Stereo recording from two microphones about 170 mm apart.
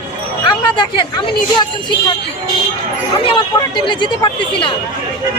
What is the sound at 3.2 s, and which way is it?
Speech, 30° left (ahead or behind).